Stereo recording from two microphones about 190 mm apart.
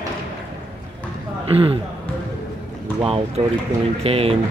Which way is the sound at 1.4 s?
30° right (ahead or behind).